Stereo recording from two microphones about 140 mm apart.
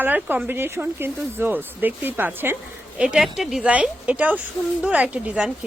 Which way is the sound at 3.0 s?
5° right (ahead or behind).